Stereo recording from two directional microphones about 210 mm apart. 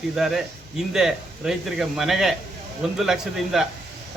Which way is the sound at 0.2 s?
Centre (ahead or behind).